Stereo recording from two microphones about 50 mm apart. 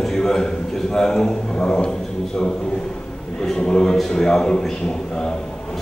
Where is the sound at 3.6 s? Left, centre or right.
Centre.